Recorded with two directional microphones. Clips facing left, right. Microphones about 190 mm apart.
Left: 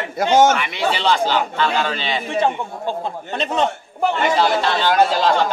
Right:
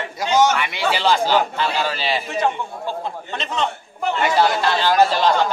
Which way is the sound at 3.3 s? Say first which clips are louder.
Left 5 dB; 40° left (ahead or behind).